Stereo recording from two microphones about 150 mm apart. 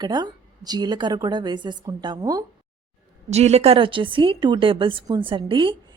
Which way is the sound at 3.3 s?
45° right (ahead or behind).